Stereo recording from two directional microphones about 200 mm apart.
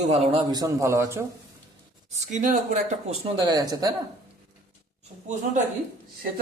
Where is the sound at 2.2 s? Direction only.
40° right (ahead or behind).